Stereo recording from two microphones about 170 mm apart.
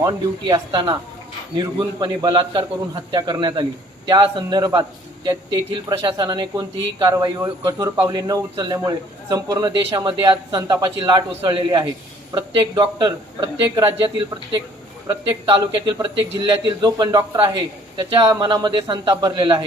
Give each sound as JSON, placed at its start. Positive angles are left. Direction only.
{"t": 0.0, "sound": "a man's voice", "side_deg": -20}